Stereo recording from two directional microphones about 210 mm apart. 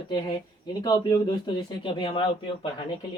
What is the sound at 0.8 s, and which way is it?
Speech, 20° left (ahead or behind).